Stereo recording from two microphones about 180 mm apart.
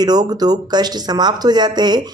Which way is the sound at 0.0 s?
20° right (ahead or behind).